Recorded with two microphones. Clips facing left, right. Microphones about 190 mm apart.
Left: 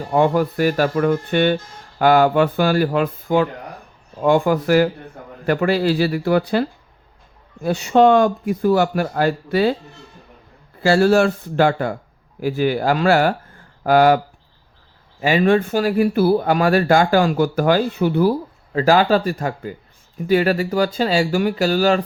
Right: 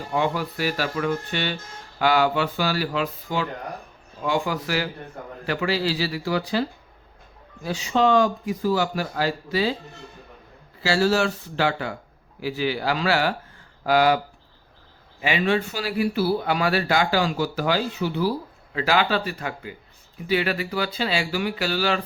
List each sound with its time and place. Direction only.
0.1 s speech: 50° left (ahead or behind)
10.8 s speech: 55° left (ahead or behind)
15.2 s speech: 45° left (ahead or behind)